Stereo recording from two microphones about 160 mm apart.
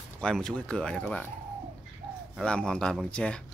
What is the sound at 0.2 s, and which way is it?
Speech, 5° left (ahead or behind).